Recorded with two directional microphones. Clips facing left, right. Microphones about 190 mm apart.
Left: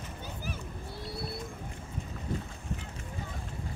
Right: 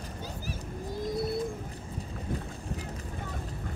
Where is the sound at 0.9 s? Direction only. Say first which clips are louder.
Right 10 dB; 45° right (ahead or behind).